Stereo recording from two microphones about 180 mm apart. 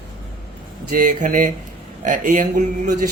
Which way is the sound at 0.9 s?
45° right (ahead or behind).